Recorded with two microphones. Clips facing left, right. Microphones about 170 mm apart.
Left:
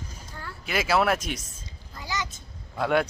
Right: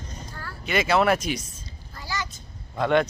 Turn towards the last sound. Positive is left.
turn(degrees=5)  # may be behind; listen again after turning